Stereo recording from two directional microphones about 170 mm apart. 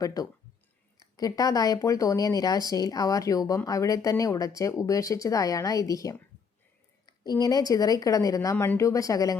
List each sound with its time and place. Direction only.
0.0 s speech: 20° left (ahead or behind)